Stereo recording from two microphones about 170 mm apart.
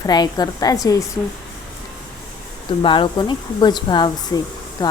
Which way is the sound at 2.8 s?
30° left (ahead or behind).